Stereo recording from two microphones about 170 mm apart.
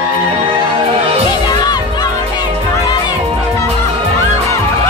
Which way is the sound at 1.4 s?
25° left (ahead or behind).